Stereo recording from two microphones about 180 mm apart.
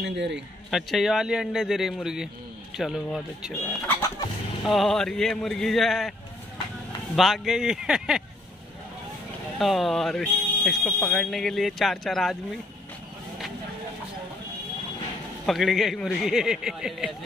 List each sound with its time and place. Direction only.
0.0 s a man's voice: 75° right (ahead or behind)
0.7 s speech: centre (ahead or behind)
3.9 s chicken: 20° left (ahead or behind)
4.6 s speech: centre (ahead or behind)
7.2 s speech: centre (ahead or behind)
9.6 s speech: centre (ahead or behind)
15.4 s speech: centre (ahead or behind)